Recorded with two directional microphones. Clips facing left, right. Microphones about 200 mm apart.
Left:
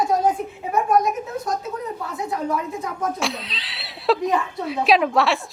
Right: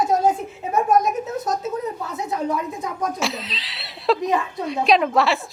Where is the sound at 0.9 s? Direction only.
20° right (ahead or behind).